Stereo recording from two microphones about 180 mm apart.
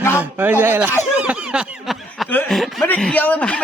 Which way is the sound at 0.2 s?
10° right (ahead or behind).